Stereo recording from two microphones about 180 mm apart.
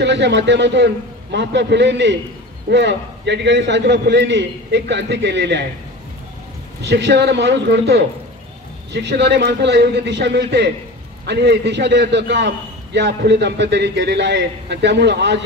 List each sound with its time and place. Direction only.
0.0 s a man's voice: 75° right (ahead or behind)
6.8 s a man's voice: 70° right (ahead or behind)